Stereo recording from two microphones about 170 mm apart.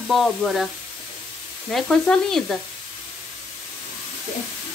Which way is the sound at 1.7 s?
Centre (ahead or behind).